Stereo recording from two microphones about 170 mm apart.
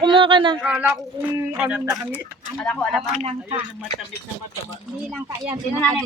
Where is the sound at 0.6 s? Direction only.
5° right (ahead or behind).